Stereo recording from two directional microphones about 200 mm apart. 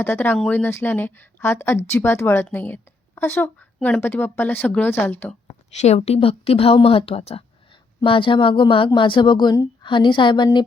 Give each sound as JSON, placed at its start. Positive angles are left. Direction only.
{"t": 0.0, "sound": "a woman's voice", "side_deg": 10}
{"t": 5.7, "sound": "a woman's voice", "side_deg": 35}